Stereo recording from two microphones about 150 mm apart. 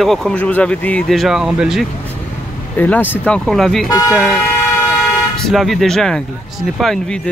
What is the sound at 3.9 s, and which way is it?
Speech, 25° left (ahead or behind).